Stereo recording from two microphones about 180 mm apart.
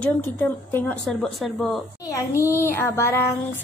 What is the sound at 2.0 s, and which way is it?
A child's voice, 15° left (ahead or behind).